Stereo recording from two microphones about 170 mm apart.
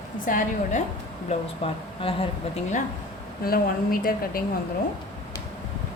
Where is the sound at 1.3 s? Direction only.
35° left (ahead or behind).